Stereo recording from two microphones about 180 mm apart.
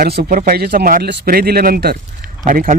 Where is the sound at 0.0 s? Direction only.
55° right (ahead or behind).